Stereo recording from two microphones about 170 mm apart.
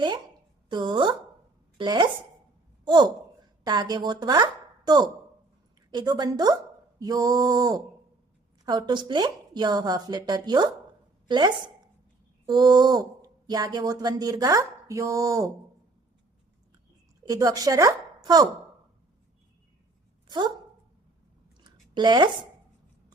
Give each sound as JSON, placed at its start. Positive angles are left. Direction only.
{"t": 0.7, "sound": "a woman's voice", "side_deg": -25}
{"t": 17.2, "sound": "speech", "side_deg": -20}
{"t": 21.6, "sound": "a sound", "side_deg": -25}